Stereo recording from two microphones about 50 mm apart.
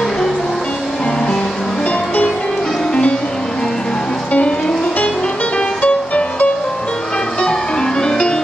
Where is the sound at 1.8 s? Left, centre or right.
Left.